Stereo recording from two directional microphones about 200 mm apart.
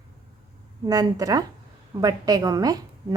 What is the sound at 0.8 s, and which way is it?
A woman's voice, 20° right (ahead or behind).